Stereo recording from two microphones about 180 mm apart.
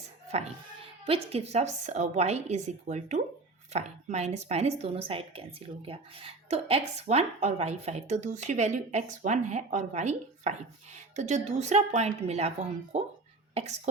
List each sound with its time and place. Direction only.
1.0 s speech: 35° right (ahead or behind)